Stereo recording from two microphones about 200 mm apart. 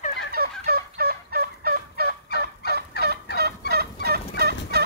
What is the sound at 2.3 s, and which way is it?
Fowl, 50° left (ahead or behind).